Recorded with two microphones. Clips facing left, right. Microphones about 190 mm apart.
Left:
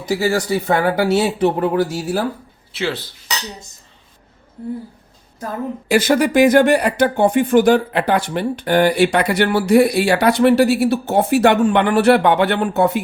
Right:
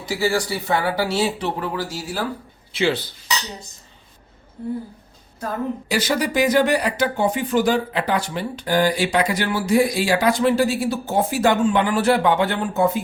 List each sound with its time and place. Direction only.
0.0 s speech: 45° left (ahead or behind)
2.7 s speech: centre (ahead or behind)
5.9 s speech: 50° left (ahead or behind); by 13.0 s 70° left (ahead or behind)